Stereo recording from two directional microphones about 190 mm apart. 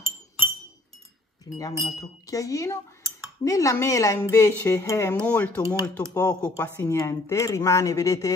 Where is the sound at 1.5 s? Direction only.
20° left (ahead or behind).